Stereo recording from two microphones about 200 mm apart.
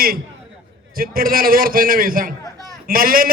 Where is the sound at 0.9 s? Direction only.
45° right (ahead or behind).